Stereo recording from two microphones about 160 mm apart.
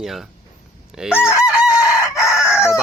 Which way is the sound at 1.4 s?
5° right (ahead or behind).